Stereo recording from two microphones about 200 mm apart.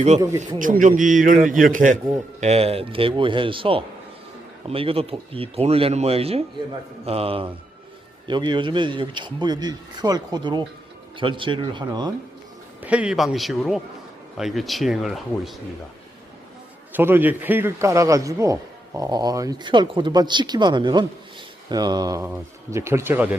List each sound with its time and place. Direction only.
0.2 s a man's voice: 15° right (ahead or behind)
0.6 s a man's voice: 40° right (ahead or behind); by 12.1 s 20° right (ahead or behind)
12.8 s speech: 5° right (ahead or behind)
16.9 s a man's voice: 10° right (ahead or behind)